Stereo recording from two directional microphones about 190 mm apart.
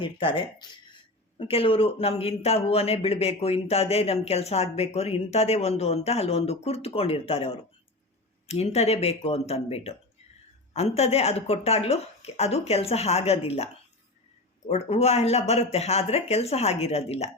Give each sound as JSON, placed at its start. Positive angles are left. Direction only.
{"t": 0.0, "sound": "speech", "side_deg": 25}
{"t": 14.7, "sound": "speech", "side_deg": 35}